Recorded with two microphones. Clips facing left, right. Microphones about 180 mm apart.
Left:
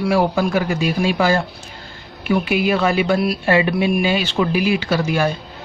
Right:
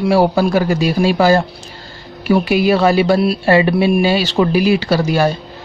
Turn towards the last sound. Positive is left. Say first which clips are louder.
# right 4 dB
turn(degrees=-35)  # may be behind; listen again after turning